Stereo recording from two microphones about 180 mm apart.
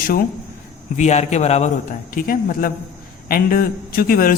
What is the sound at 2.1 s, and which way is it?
A man's voice, 50° left (ahead or behind).